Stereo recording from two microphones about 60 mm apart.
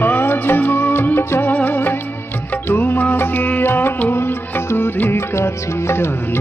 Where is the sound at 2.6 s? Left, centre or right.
Left.